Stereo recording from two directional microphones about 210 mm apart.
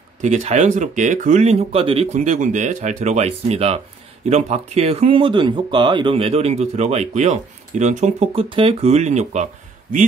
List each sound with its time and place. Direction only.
0.2 s speech: 35° right (ahead or behind)